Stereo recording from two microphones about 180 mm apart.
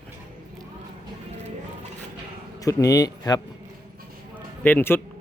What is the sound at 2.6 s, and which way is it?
Speech, 20° left (ahead or behind).